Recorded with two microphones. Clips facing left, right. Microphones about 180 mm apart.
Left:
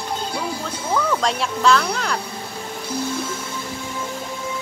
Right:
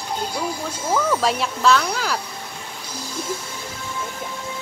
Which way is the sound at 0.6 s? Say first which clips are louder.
Right 1 dB; 10° right (ahead or behind).